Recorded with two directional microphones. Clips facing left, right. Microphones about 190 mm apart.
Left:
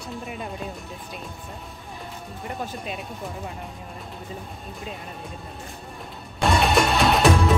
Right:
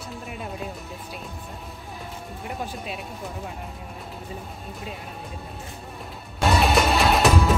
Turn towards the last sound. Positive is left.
turn(degrees=0)  # may be behind; listen again after turning